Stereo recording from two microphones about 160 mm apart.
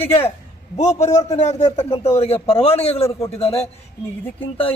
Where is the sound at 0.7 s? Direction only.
45° left (ahead or behind).